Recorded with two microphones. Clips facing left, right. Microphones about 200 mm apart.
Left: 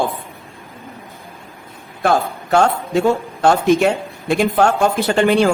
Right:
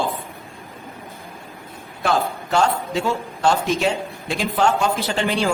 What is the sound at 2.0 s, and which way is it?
A man's voice, 50° left (ahead or behind).